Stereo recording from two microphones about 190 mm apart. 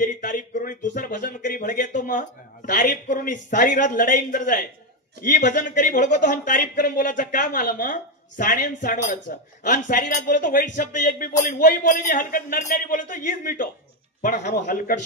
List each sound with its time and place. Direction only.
0.0 s speech: 45° left (ahead or behind)